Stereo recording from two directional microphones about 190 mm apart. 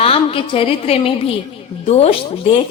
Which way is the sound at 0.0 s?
30° left (ahead or behind).